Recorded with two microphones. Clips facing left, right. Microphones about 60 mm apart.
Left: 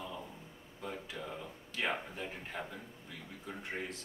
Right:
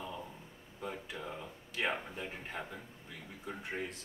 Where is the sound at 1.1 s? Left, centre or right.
Centre.